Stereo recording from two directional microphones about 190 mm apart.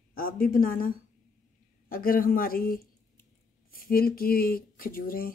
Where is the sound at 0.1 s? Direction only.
50° left (ahead or behind).